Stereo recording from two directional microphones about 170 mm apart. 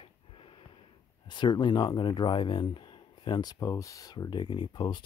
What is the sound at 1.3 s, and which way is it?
Speech, 25° left (ahead or behind).